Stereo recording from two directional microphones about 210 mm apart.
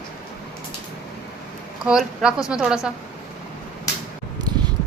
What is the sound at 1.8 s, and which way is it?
Speech, 5° right (ahead or behind).